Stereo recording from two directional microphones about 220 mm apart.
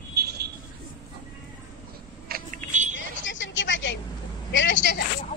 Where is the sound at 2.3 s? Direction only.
35° right (ahead or behind).